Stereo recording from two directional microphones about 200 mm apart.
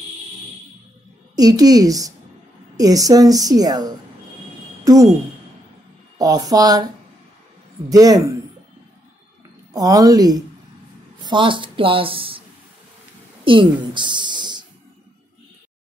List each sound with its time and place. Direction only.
1.3 s a woman's voice: 20° right (ahead or behind)
6.1 s a woman's voice: 20° right (ahead or behind)
7.9 s a woman's voice: 20° right (ahead or behind)
9.7 s a woman's voice: 20° right (ahead or behind)